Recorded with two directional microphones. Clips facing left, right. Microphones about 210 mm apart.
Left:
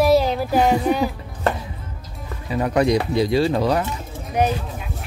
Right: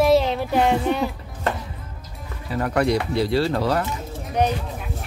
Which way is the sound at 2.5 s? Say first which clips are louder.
Left 2 dB; 15° left (ahead or behind).